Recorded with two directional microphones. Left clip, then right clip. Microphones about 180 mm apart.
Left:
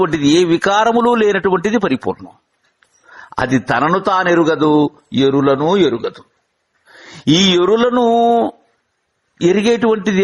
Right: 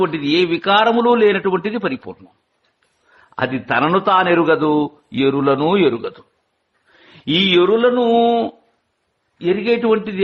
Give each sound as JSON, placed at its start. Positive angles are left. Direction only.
{"t": 0.0, "sound": "a man's voice", "side_deg": 45}
{"t": 3.2, "sound": "speech", "side_deg": 45}
{"t": 3.8, "sound": "a man's voice", "side_deg": 30}
{"t": 7.3, "sound": "speech", "side_deg": 45}
{"t": 9.4, "sound": "a man's voice", "side_deg": 45}